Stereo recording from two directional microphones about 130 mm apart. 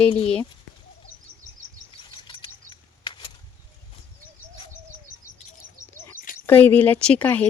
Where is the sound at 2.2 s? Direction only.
40° left (ahead or behind).